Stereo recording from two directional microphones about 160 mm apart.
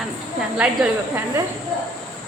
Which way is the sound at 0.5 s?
10° right (ahead or behind).